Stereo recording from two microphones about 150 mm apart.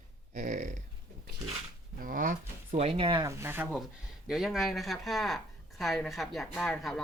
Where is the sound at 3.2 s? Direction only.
20° right (ahead or behind).